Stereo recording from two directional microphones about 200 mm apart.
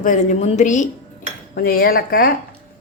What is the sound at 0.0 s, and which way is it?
Speech, 40° left (ahead or behind).